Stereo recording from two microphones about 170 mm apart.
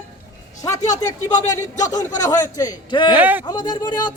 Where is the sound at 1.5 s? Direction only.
20° left (ahead or behind).